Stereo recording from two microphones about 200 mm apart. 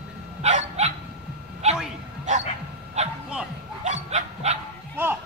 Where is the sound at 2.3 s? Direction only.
35° right (ahead or behind).